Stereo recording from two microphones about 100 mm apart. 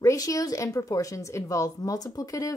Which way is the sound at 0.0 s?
35° left (ahead or behind).